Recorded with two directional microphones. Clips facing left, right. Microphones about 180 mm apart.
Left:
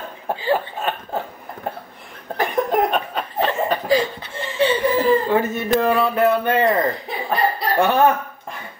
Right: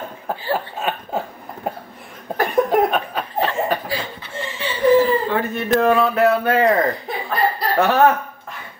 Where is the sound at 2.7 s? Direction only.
Centre (ahead or behind).